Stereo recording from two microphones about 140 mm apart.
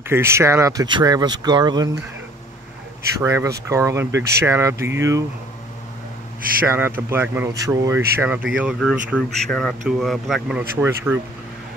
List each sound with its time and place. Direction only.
0.1 s speech: 20° right (ahead or behind)
3.2 s speech: 20° right (ahead or behind)
6.6 s speech: 15° right (ahead or behind)
10.8 s speech: 15° right (ahead or behind)